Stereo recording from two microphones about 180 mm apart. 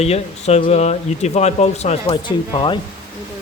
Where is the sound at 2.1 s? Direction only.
25° left (ahead or behind).